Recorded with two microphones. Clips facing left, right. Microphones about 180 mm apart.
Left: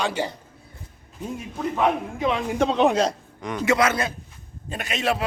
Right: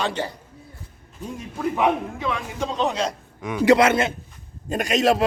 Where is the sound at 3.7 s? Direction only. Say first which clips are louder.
Right 5 dB; 30° right (ahead or behind).